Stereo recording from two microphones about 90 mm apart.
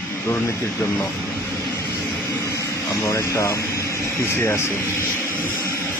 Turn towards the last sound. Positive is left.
turn(degrees=30)  # may be behind; listen again after turning